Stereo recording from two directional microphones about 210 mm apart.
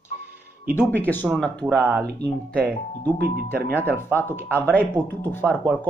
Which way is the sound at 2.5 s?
5° left (ahead or behind).